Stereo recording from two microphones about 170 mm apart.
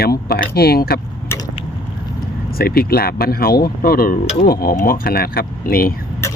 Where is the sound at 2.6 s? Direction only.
60° left (ahead or behind).